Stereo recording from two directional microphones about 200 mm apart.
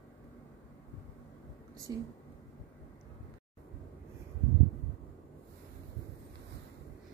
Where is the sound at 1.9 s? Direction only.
15° right (ahead or behind).